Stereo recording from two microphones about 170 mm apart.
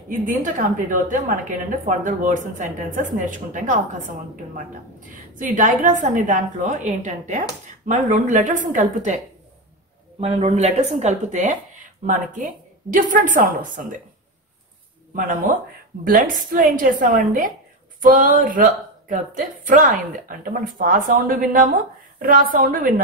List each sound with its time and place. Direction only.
0.1 s a woman's voice: 50° right (ahead or behind)
5.4 s a woman's voice: 50° right (ahead or behind)
10.2 s a woman's voice: 40° right (ahead or behind)
15.1 s a woman's voice: 50° right (ahead or behind)